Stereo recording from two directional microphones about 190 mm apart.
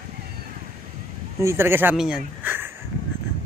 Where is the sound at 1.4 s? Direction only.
10° right (ahead or behind).